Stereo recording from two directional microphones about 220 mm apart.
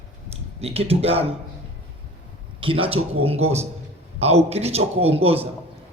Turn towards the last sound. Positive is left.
turn(degrees=-25)  # may be behind; listen again after turning